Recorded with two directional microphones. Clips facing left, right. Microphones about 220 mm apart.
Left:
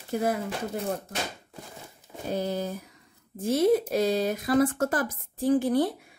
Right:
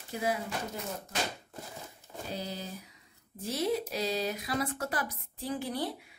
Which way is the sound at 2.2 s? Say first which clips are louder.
Left 10 dB; 50° left (ahead or behind).